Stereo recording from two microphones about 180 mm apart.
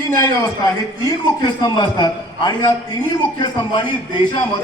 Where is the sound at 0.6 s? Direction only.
20° left (ahead or behind).